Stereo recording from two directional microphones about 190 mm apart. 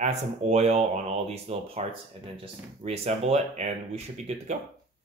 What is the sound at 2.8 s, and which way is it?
Speech, 35° right (ahead or behind).